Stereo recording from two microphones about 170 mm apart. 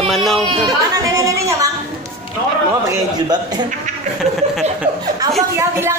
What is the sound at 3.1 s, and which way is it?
Speech, 25° right (ahead or behind).